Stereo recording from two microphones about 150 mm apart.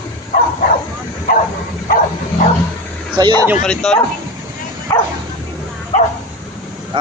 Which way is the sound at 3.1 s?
30° right (ahead or behind).